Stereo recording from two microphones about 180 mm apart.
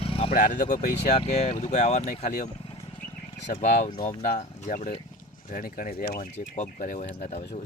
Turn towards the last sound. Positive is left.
turn(degrees=40)  # may be behind; listen again after turning